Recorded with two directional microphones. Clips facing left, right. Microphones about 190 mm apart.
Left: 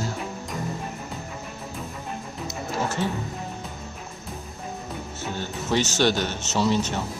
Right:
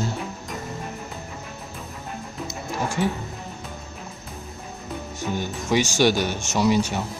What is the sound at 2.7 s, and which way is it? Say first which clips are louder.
Music: right 2 dB; 10° right (ahead or behind).